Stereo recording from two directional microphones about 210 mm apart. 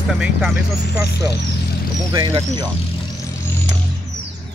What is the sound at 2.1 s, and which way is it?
Speech, 20° right (ahead or behind).